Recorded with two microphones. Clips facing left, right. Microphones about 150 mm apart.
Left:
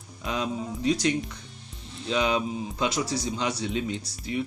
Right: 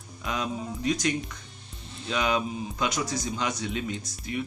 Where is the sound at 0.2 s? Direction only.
30° left (ahead or behind).